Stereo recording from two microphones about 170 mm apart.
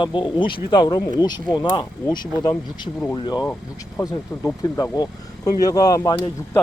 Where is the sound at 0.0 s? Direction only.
30° left (ahead or behind).